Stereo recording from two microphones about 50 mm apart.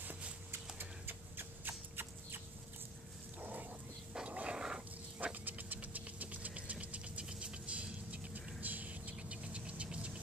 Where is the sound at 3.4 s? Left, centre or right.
Right.